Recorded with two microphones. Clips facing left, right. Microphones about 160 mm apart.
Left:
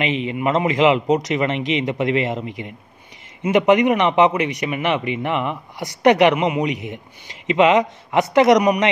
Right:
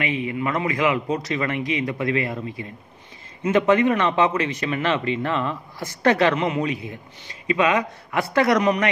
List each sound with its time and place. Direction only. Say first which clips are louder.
0.0 s a man's voice: left 4 dB; 25° left (ahead or behind)